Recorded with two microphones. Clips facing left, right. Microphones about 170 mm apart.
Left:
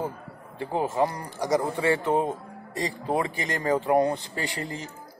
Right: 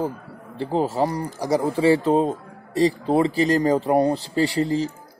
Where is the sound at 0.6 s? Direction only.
30° right (ahead or behind).